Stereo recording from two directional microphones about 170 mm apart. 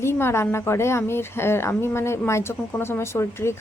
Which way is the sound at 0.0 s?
15° left (ahead or behind).